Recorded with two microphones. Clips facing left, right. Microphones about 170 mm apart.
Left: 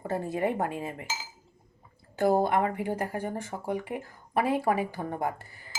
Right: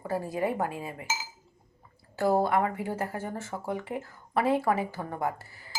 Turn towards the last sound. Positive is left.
turn(degrees=20)  # may be behind; listen again after turning